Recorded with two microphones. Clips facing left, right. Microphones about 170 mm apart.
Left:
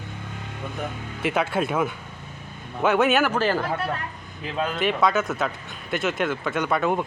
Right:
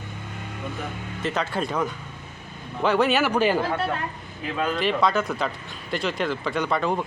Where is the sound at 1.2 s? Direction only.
10° left (ahead or behind).